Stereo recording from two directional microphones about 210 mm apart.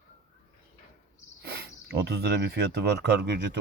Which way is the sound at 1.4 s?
50° right (ahead or behind).